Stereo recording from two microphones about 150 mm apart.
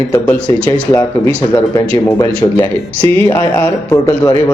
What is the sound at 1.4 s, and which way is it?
A man's voice, 25° left (ahead or behind).